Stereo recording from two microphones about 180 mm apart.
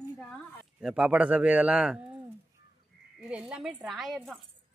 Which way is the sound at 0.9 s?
5° right (ahead or behind).